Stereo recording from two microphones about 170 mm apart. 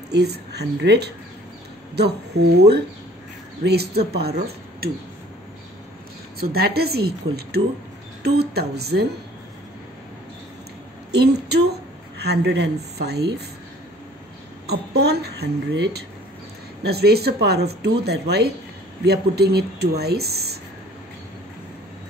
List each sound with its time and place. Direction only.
0.1 s speech: 75° right (ahead or behind)
6.4 s speech: 65° right (ahead or behind)
11.1 s a woman's voice: 70° right (ahead or behind)
14.7 s speech: 70° right (ahead or behind)